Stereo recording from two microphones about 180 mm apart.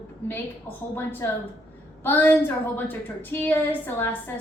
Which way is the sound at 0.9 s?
10° left (ahead or behind).